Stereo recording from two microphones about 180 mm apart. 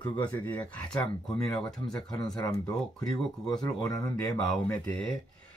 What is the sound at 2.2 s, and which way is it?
Speech, 20° left (ahead or behind).